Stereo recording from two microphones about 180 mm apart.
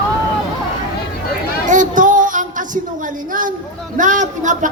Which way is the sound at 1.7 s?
45° right (ahead or behind).